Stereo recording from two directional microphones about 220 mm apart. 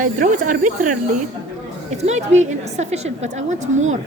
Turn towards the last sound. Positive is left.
turn(degrees=-30)  # may be behind; listen again after turning